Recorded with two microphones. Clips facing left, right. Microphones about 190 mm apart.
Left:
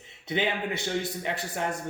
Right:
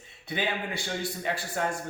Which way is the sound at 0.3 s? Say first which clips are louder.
Left 3 dB; 20° left (ahead or behind).